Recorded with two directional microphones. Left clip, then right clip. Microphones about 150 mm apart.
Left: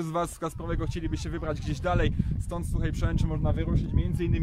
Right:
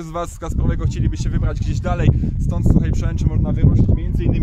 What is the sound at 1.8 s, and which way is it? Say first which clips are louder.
Speech: right 5 dB; 25° right (ahead or behind).